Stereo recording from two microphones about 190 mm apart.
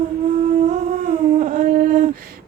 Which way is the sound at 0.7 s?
40° right (ahead or behind).